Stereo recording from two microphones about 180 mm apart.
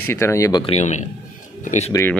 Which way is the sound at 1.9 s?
15° left (ahead or behind).